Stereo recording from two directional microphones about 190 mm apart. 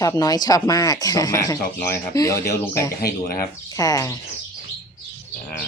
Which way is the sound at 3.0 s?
55° left (ahead or behind).